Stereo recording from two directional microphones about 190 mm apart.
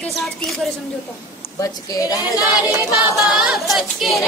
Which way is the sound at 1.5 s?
20° left (ahead or behind).